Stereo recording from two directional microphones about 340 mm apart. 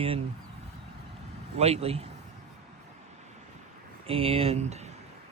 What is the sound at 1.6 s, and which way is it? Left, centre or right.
Speech, centre.